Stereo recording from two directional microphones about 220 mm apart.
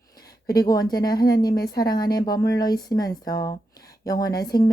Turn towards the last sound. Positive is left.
turn(degrees=15)  # may be behind; listen again after turning